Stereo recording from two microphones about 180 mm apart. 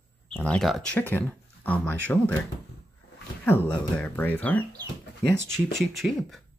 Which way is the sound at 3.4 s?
10° left (ahead or behind).